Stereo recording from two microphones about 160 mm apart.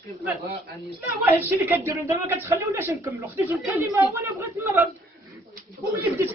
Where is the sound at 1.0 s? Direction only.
10° right (ahead or behind).